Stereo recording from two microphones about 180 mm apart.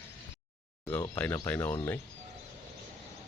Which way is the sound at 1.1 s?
10° left (ahead or behind).